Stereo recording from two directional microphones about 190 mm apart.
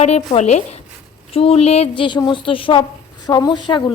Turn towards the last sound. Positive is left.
turn(degrees=25)  # may be behind; listen again after turning